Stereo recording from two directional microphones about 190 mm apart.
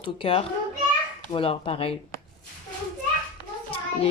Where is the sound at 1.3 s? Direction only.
30° left (ahead or behind).